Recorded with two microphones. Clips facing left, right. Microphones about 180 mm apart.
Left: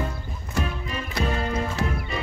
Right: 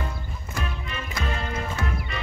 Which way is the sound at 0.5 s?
35° left (ahead or behind).